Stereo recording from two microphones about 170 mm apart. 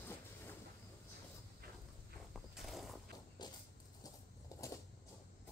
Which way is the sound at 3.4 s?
25° left (ahead or behind).